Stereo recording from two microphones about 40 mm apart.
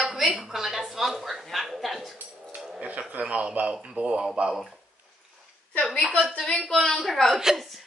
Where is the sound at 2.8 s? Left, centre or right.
Right.